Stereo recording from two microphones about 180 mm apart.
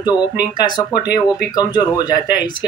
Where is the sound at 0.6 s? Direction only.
25° left (ahead or behind).